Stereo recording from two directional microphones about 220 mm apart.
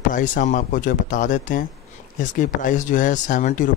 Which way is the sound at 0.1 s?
35° left (ahead or behind).